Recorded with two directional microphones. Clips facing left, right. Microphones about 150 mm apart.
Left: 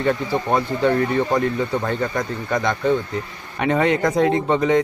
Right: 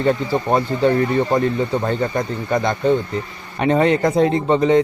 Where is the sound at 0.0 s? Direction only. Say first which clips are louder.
Right 2 dB; 30° right (ahead or behind).